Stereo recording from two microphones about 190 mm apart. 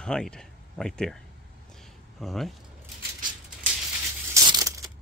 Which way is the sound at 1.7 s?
Centre (ahead or behind).